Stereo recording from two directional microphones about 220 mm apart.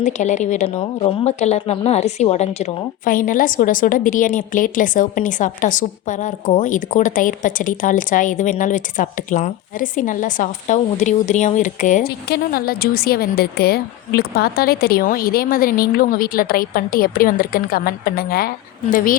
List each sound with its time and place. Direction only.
0.0 s a woman's voice: 35° left (ahead or behind)